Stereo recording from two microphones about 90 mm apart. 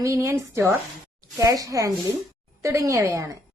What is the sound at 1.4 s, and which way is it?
A woman's voice, 40° right (ahead or behind).